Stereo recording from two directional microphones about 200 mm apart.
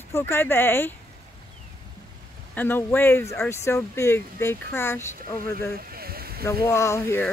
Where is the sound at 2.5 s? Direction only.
10° left (ahead or behind).